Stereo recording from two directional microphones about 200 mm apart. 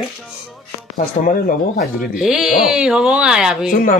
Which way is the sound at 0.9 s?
40° left (ahead or behind).